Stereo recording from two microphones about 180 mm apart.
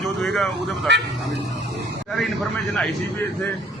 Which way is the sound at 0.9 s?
75° right (ahead or behind).